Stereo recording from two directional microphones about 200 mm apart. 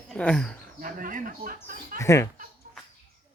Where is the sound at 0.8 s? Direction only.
45° right (ahead or behind).